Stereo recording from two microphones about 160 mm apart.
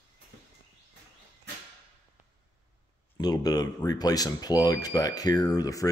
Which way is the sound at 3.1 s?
25° left (ahead or behind).